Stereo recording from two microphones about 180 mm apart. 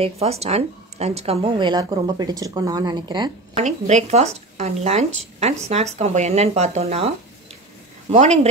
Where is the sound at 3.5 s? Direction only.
40° right (ahead or behind).